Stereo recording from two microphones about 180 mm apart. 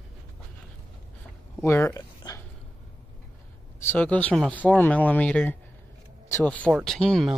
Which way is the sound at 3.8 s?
10° left (ahead or behind).